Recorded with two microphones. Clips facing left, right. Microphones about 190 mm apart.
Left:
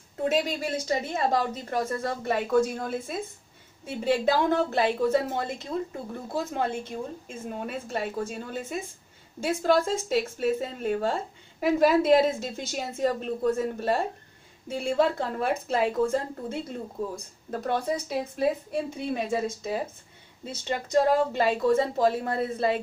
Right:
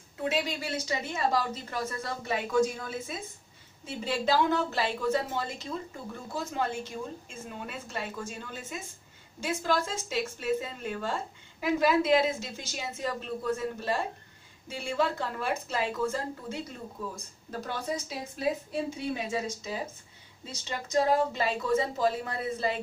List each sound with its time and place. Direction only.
0.2 s a woman's voice: 45° left (ahead or behind)